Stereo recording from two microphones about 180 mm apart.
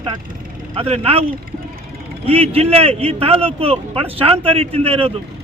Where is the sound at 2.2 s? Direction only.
30° right (ahead or behind).